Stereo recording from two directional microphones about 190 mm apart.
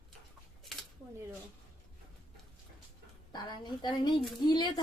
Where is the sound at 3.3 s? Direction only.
25° left (ahead or behind).